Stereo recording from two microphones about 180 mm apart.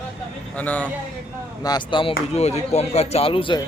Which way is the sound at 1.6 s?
25° left (ahead or behind).